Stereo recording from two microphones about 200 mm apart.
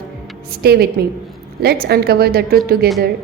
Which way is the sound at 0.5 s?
50° right (ahead or behind).